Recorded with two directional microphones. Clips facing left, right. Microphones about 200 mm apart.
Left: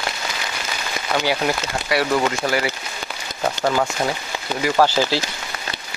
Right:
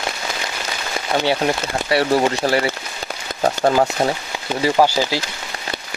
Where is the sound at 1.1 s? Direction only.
30° right (ahead or behind).